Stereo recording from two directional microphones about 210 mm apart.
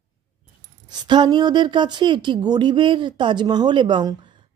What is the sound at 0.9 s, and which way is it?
A woman's voice, 20° right (ahead or behind).